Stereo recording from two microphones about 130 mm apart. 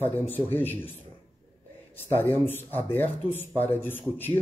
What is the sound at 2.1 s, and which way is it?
A man's voice, 15° left (ahead or behind).